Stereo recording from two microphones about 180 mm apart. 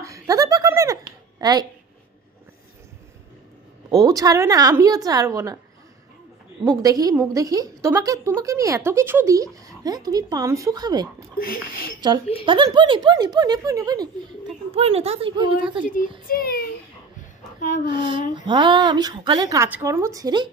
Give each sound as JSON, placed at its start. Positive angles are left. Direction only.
{"t": 0.0, "sound": "a sound", "side_deg": -20}
{"t": 1.4, "sound": "speech", "side_deg": -20}
{"t": 3.9, "sound": "speech", "side_deg": -20}
{"t": 6.6, "sound": "speech", "side_deg": -20}
{"t": 11.3, "sound": "speech", "side_deg": 55}
{"t": 12.4, "sound": "speech", "side_deg": -25}
{"t": 14.8, "sound": "a woman's voice", "side_deg": -35}
{"t": 15.8, "sound": "speech", "side_deg": 45}
{"t": 17.6, "sound": "a sound", "side_deg": 40}
{"t": 17.9, "sound": "speech", "side_deg": -25}